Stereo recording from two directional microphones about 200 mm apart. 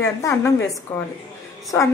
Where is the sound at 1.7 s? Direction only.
15° left (ahead or behind).